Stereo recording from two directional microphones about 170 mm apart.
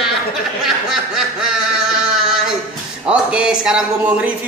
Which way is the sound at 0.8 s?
5° right (ahead or behind).